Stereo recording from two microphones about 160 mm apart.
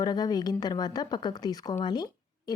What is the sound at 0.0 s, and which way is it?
Speech, 25° left (ahead or behind).